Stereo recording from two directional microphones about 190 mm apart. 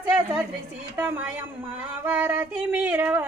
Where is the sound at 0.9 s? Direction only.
10° right (ahead or behind).